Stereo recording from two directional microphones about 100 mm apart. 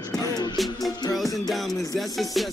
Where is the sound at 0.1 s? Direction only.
35° left (ahead or behind).